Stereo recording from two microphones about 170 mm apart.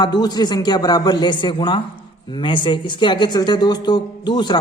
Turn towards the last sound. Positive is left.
turn(degrees=25)  # may be behind; listen again after turning